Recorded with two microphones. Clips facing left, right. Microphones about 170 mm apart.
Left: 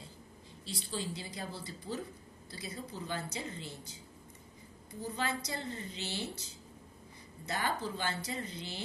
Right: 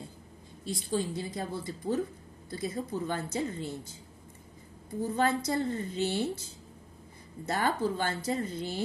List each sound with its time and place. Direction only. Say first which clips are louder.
0.7 s a woman's voice: right 8 dB; 50° right (ahead or behind)
5.1 s a woman's voice: right 9 dB; 50° right (ahead or behind)
7.4 s a woman's voice: right 7 dB; 50° right (ahead or behind)